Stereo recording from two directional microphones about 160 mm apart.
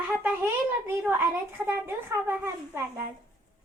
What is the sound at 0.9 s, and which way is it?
A woman's voice, 15° right (ahead or behind).